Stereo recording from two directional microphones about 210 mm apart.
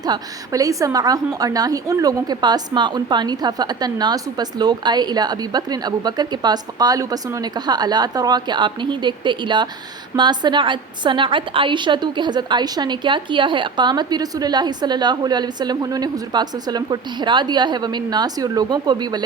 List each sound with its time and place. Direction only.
0.0 s a woman's voice: 15° right (ahead or behind)